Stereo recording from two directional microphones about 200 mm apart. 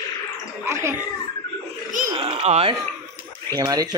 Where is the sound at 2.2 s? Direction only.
30° right (ahead or behind).